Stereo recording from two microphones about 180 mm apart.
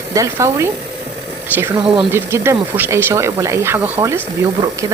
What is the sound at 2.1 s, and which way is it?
Speech, 15° right (ahead or behind).